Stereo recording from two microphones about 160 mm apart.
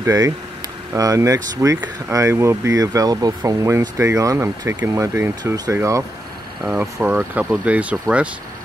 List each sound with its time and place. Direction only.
0.0 s speech: 20° right (ahead or behind)
6.6 s speech: 5° right (ahead or behind)